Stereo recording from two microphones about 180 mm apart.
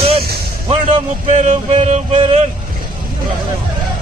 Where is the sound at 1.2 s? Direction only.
40° right (ahead or behind).